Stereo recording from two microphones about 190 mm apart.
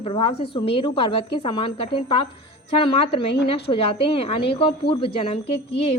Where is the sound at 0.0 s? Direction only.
30° left (ahead or behind).